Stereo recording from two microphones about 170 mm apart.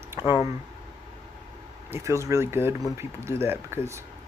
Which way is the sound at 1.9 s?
15° right (ahead or behind).